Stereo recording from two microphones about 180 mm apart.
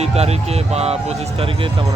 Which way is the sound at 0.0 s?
35° right (ahead or behind).